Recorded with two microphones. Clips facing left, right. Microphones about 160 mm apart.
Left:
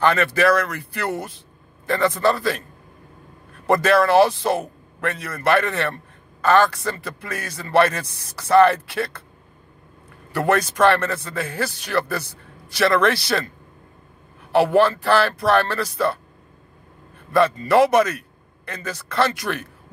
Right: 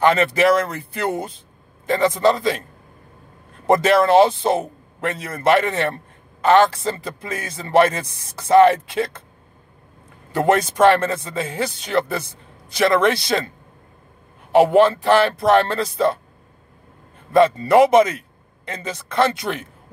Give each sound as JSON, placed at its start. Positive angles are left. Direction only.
{"t": 0.0, "sound": "speech", "side_deg": -20}
{"t": 3.6, "sound": "speech", "side_deg": -20}
{"t": 10.3, "sound": "speech", "side_deg": -20}
{"t": 14.5, "sound": "speech", "side_deg": -20}
{"t": 17.3, "sound": "speech", "side_deg": -20}